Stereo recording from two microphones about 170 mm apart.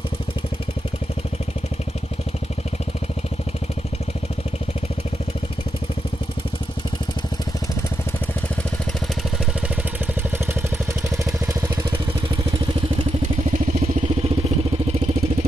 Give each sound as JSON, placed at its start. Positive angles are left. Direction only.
{"t": 13.5, "sound": "vehicle", "side_deg": -40}